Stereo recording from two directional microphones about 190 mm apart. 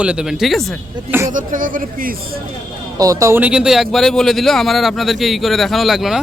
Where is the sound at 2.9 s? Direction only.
20° right (ahead or behind); by 6.2 s centre (ahead or behind).